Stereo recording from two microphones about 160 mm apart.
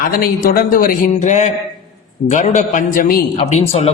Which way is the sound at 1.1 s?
50° left (ahead or behind).